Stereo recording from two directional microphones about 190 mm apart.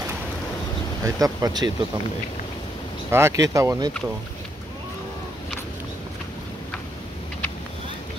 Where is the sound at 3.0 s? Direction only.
15° right (ahead or behind).